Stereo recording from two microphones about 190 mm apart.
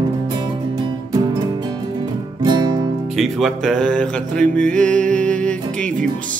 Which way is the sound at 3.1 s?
Centre (ahead or behind).